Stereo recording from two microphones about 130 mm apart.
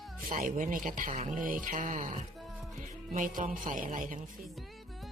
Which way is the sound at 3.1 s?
90° right.